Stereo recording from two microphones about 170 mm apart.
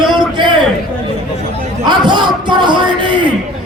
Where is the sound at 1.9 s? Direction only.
25° right (ahead or behind).